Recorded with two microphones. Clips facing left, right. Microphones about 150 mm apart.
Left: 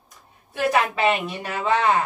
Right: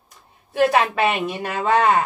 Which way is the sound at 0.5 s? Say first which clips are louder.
Right 4 dB; 60° right (ahead or behind).